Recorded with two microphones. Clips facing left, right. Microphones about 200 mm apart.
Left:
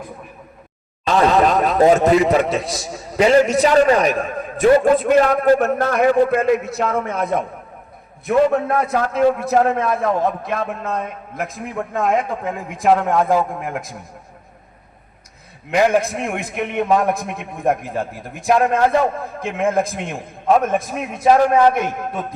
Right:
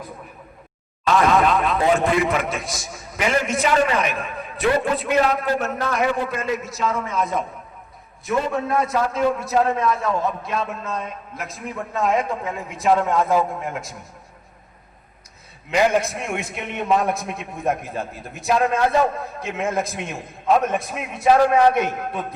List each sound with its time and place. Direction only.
1.0 s a man's voice: 35° left (ahead or behind); by 13.8 s 55° left (ahead or behind)
15.7 s a man's voice: 55° left (ahead or behind)